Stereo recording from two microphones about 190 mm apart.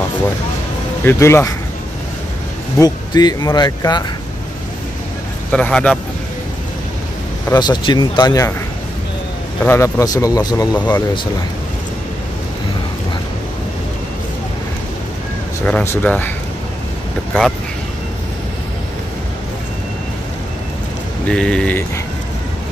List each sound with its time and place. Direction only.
1.0 s speech: 15° left (ahead or behind)
2.8 s speech: 20° left (ahead or behind)
5.5 s speech: 5° left (ahead or behind)
7.4 s speech: 20° left (ahead or behind)
9.6 s speech: 15° left (ahead or behind)
15.6 s speech: 10° left (ahead or behind)
21.3 s speech: 5° left (ahead or behind)